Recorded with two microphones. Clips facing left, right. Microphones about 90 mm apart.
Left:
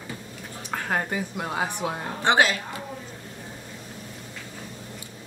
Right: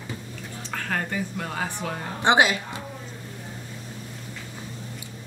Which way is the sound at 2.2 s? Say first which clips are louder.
Right 1 dB; 20° right (ahead or behind).